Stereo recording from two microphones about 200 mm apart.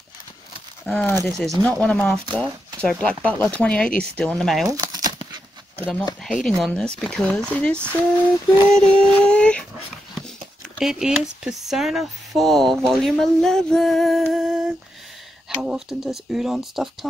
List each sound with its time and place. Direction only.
0.8 s speech: 10° left (ahead or behind)
4.6 s a sound: 20° right (ahead or behind)
6.2 s speech: centre (ahead or behind)
10.8 s speech: 5° right (ahead or behind)